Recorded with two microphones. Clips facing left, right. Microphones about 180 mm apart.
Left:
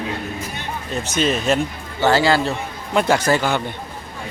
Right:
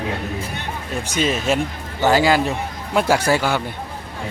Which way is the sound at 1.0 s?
10° right (ahead or behind).